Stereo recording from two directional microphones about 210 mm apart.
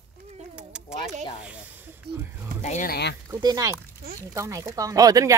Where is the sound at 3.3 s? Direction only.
15° right (ahead or behind).